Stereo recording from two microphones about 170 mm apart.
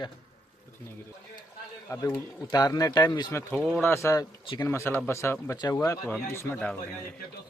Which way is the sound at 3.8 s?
15° left (ahead or behind).